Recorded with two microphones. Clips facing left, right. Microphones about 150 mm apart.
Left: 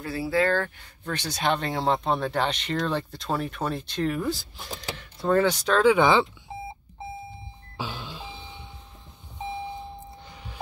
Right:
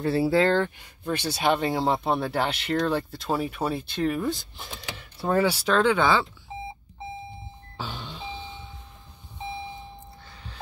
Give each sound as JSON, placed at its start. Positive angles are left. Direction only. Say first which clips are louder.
{"t": 0.0, "sound": "speech", "louder": "right 4 dB", "side_deg": -30}
{"t": 1.0, "sound": "speech", "louder": "right 2 dB", "side_deg": -10}
{"t": 5.8, "sound": "speech", "louder": "left 3 dB", "side_deg": 10}
{"t": 7.7, "sound": "a sound", "louder": "left 1 dB", "side_deg": 10}